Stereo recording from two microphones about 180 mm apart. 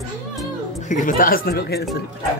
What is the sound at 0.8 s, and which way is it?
Speech, 45° left (ahead or behind).